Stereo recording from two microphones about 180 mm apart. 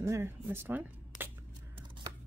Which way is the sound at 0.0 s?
15° right (ahead or behind).